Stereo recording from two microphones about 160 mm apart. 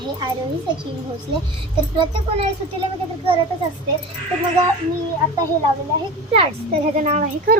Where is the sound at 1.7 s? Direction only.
35° right (ahead or behind).